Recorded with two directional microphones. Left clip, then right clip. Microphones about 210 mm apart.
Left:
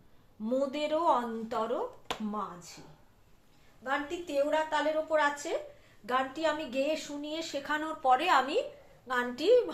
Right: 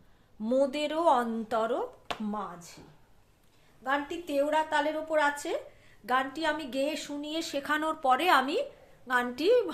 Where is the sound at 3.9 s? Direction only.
55° right (ahead or behind).